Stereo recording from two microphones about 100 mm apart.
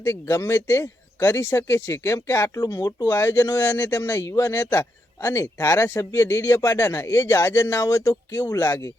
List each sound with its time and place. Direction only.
0.0 s speech: 25° left (ahead or behind)
2.6 s speech: 40° left (ahead or behind)
3.1 s speech: 25° left (ahead or behind)